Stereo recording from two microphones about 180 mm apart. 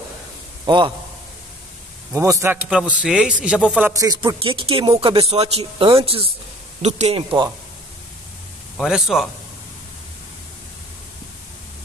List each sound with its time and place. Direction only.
0.7 s a man's voice: 25° right (ahead or behind)
2.1 s a man's voice: 15° right (ahead or behind)
3.9 s speech: 20° right (ahead or behind)
8.7 s a man's voice: centre (ahead or behind)